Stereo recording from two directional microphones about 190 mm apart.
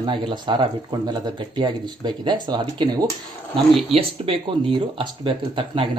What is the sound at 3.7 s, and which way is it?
Speech, centre (ahead or behind).